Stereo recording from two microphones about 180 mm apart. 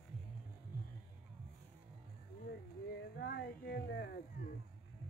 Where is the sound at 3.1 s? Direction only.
65° left (ahead or behind).